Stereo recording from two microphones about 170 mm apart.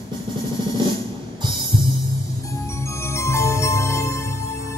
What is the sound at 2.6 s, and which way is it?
Music, 15° left (ahead or behind).